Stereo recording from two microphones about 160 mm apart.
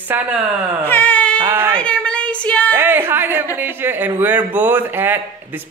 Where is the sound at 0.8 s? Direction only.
10° left (ahead or behind).